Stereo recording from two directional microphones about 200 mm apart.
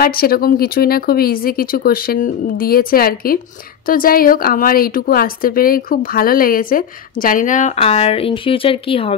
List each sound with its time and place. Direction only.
0.0 s a woman's voice: 50° left (ahead or behind); by 9.1 s 25° left (ahead or behind)